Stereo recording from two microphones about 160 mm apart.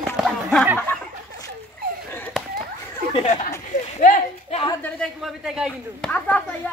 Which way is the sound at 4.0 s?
45° left (ahead or behind).